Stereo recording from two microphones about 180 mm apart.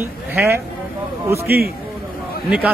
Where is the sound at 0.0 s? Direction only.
15° right (ahead or behind).